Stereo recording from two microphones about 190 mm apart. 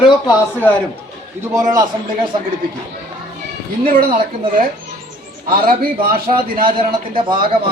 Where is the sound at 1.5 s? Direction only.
20° right (ahead or behind).